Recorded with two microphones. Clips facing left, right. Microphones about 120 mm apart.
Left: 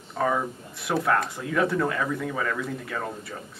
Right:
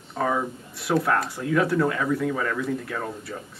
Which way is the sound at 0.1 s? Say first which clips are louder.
Even; centre (ahead or behind).